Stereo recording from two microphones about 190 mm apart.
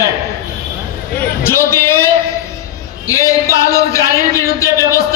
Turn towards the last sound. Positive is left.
turn(degrees=15)  # may be behind; listen again after turning